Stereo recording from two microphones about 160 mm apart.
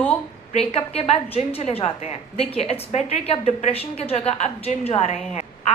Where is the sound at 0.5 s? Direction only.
40° left (ahead or behind).